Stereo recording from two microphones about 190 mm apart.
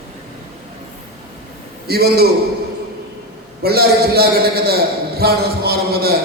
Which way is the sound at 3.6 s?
55° right (ahead or behind).